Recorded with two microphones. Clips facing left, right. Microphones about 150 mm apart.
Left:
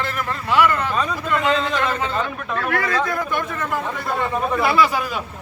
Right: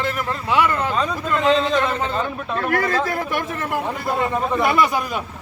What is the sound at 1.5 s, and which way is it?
A man's voice, 30° right (ahead or behind).